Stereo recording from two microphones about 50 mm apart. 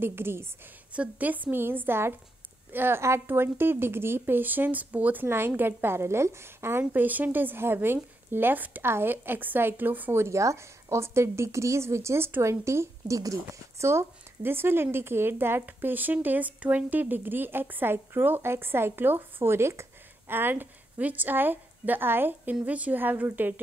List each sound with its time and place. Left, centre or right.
0.0 s speech: right
0.9 s a woman's voice: right
5.2 s speech: right
6.8 s a woman's voice: right
8.8 s speech: right
10.1 s a woman's voice: right
15.6 s speech: right
20.2 s speech: right
21.0 s a woman's voice: right
22.4 s a woman's voice: right